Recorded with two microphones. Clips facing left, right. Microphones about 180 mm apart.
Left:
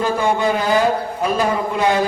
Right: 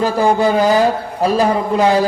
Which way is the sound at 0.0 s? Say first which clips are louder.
Right 4 dB; 35° right (ahead or behind).